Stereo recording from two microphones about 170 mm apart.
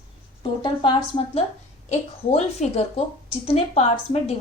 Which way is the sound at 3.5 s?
40° left (ahead or behind).